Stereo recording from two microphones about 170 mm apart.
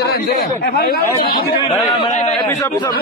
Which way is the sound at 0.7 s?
60° left (ahead or behind).